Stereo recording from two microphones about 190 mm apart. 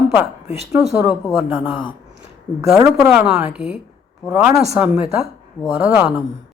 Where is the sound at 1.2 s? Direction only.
5° right (ahead or behind).